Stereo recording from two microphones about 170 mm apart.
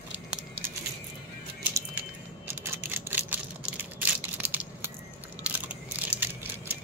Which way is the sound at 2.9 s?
10° right (ahead or behind).